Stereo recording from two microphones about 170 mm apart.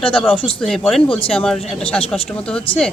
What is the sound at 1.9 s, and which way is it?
Speech, 35° left (ahead or behind).